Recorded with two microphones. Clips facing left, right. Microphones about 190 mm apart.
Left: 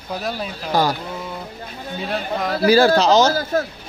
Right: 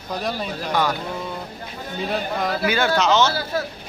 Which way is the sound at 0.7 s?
35° left (ahead or behind).